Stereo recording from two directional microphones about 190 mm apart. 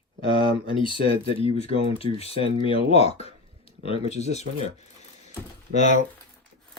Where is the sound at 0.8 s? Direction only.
30° left (ahead or behind).